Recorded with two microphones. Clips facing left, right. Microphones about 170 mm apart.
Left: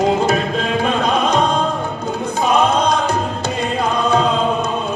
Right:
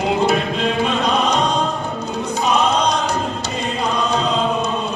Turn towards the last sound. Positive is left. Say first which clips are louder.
# left 3 dB
turn(degrees=50)  # may be behind; listen again after turning